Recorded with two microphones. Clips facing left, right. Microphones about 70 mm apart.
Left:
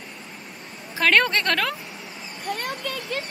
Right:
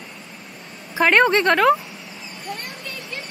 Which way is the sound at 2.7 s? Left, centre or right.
Left.